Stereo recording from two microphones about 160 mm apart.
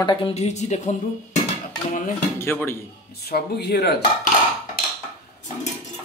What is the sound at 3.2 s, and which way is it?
Speech, 85° left.